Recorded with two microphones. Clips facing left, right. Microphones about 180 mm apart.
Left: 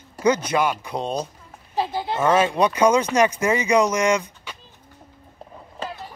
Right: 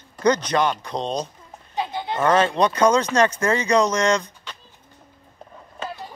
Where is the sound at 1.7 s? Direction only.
35° left (ahead or behind).